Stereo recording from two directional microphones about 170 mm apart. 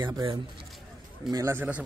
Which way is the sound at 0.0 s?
20° right (ahead or behind).